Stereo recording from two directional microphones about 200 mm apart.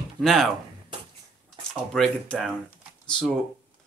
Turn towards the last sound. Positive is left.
turn(degrees=5)  # may be behind; listen again after turning